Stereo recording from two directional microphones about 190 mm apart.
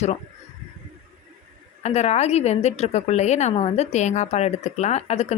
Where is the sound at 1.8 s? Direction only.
35° left (ahead or behind).